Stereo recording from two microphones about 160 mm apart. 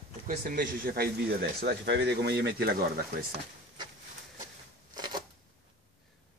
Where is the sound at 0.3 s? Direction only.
60° right (ahead or behind).